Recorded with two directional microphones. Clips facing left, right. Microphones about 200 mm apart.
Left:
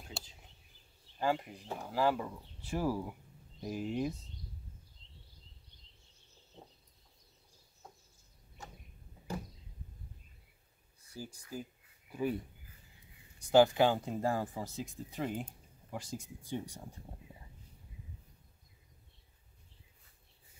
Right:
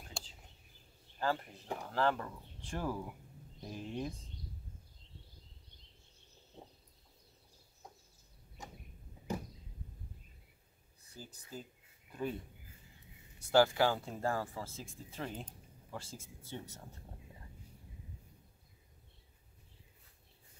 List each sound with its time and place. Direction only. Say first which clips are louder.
0.2 s a sound: even; 5° left (ahead or behind)
1.2 s speech: left 3 dB; 15° left (ahead or behind)
11.1 s speech: left 5 dB; 10° left (ahead or behind)
13.4 s speech: left 3 dB; 15° left (ahead or behind)